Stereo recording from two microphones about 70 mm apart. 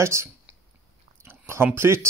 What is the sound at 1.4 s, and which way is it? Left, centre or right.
Speech, right.